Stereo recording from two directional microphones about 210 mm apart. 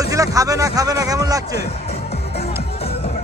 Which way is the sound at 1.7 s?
30° left (ahead or behind).